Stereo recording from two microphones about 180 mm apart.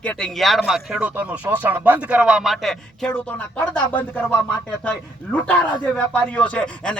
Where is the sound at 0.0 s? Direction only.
5° left (ahead or behind).